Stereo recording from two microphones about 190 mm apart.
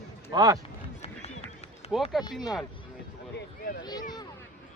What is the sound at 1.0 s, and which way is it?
Run, 30° left (ahead or behind).